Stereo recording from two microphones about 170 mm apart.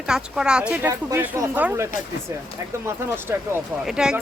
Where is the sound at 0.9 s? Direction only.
15° right (ahead or behind).